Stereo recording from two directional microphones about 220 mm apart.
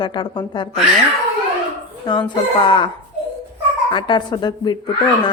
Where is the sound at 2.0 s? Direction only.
20° left (ahead or behind).